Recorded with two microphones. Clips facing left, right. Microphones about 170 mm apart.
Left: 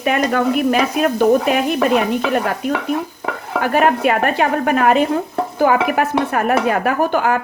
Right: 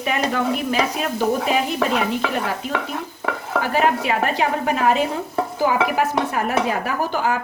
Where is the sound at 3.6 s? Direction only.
55° left (ahead or behind).